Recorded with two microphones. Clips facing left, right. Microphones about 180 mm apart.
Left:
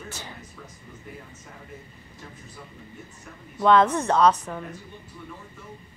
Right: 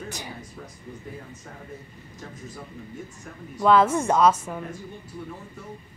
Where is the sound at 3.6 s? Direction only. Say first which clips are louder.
Even; 5° right (ahead or behind).